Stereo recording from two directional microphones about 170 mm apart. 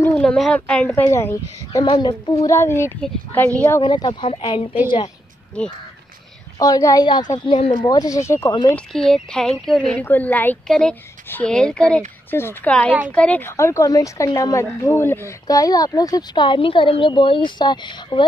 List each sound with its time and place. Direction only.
0.0 s a sound: 5° left (ahead or behind)
0.7 s a woman's voice: 10° left (ahead or behind); by 2.5 s 25° left (ahead or behind)
2.5 s speech: 15° left (ahead or behind)
3.8 s a woman's voice: 25° left (ahead or behind)
6.6 s a woman's voice: 20° left (ahead or behind)
8.7 s a woman's voice: 5° left (ahead or behind); by 18.2 s 25° left (ahead or behind)